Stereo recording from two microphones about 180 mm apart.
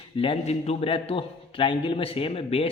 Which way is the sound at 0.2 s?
35° left (ahead or behind).